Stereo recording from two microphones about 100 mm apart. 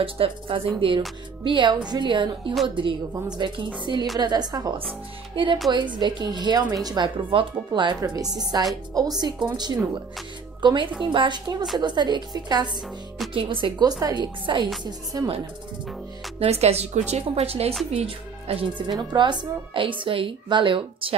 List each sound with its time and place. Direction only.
0.0 s a woman's voice: 65° right (ahead or behind); by 4.7 s 40° right (ahead or behind)
5.3 s a woman's voice: 60° right (ahead or behind); by 7.1 s 40° right (ahead or behind)
7.2 s speech: 55° right (ahead or behind)
8.1 s a woman's voice: 40° right (ahead or behind)
13.3 s speech: 60° right (ahead or behind)
13.8 s a woman's voice: 40° right (ahead or behind)
15.1 s a woman's voice: 35° right (ahead or behind)
16.3 s a woman's voice: 90° right
17.9 s speech: 75° right (ahead or behind)
18.9 s a woman's voice: 50° right (ahead or behind)